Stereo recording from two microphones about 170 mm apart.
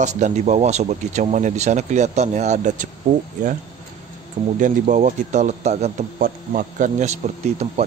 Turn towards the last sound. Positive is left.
turn(degrees=-40)  # may be behind; listen again after turning